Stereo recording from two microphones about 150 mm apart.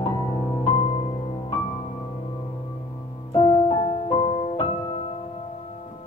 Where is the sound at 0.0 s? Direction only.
35° left (ahead or behind).